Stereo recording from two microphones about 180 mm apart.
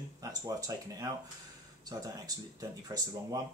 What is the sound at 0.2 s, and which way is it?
Speech, 20° right (ahead or behind).